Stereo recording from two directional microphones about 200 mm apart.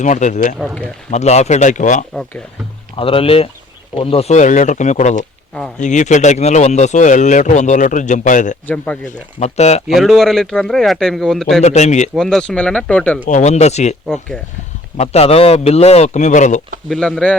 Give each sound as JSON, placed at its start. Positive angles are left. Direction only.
{"t": 0.0, "sound": "speech", "side_deg": 35}
{"t": 2.9, "sound": "speech", "side_deg": 25}
{"t": 8.6, "sound": "speech", "side_deg": 5}
{"t": 9.4, "sound": "speech", "side_deg": 35}
{"t": 9.9, "sound": "a man's voice", "side_deg": 0}
{"t": 11.6, "sound": "speech", "side_deg": 35}
{"t": 12.1, "sound": "a man's voice", "side_deg": 0}
{"t": 13.2, "sound": "speech", "side_deg": 35}
{"t": 14.9, "sound": "speech", "side_deg": 30}
{"t": 16.9, "sound": "a man's voice", "side_deg": 5}